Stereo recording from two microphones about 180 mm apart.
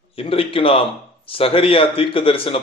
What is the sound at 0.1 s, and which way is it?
Speech, 30° left (ahead or behind).